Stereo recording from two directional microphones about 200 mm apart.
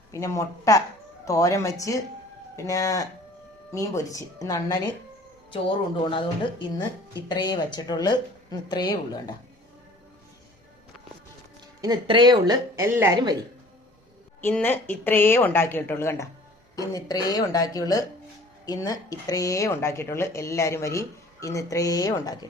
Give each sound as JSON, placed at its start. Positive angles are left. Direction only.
{"t": 0.1, "sound": "a woman's voice", "side_deg": 15}
{"t": 11.8, "sound": "a woman's voice", "side_deg": -20}
{"t": 14.4, "sound": "speech", "side_deg": 10}